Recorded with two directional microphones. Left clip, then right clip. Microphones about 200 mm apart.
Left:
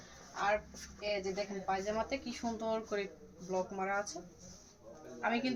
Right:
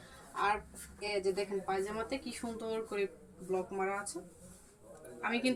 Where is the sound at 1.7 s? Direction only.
15° left (ahead or behind).